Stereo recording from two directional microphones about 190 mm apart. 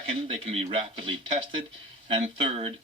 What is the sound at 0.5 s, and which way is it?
Speech, 30° right (ahead or behind).